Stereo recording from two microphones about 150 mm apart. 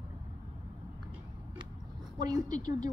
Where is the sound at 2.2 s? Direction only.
25° right (ahead or behind).